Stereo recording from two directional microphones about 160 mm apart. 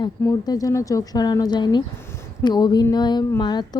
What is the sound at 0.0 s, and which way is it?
Speech, 25° left (ahead or behind).